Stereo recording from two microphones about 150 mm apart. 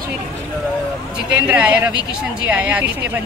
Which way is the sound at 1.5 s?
10° right (ahead or behind).